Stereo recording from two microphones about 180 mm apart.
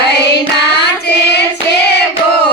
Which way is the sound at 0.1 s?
65° left (ahead or behind).